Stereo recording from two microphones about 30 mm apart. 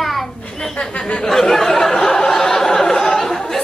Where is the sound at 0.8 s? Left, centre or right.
Left.